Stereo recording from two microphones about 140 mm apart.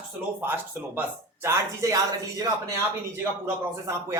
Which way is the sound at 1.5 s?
20° right (ahead or behind).